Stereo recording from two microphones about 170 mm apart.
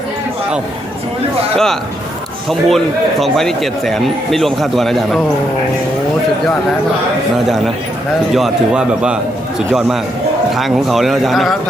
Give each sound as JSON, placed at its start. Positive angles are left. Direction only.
{"t": 1.5, "sound": "speech", "side_deg": 0}
{"t": 8.3, "sound": "speech", "side_deg": -5}
{"t": 10.5, "sound": "speech", "side_deg": 0}